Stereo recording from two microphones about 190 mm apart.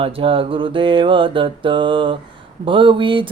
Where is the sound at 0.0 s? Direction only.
30° right (ahead or behind).